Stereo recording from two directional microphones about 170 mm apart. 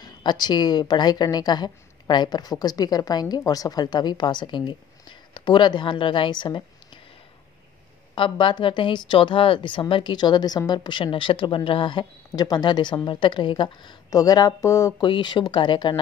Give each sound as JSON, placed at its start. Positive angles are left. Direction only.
{"t": 0.0, "sound": "a woman's voice", "side_deg": 25}
{"t": 8.1, "sound": "a woman's voice", "side_deg": 30}